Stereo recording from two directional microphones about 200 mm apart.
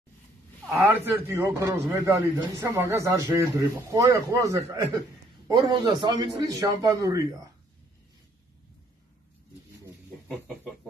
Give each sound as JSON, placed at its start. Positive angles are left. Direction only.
{"t": 0.7, "sound": "a man's voice", "side_deg": -10}
{"t": 10.2, "sound": "chicken", "side_deg": 0}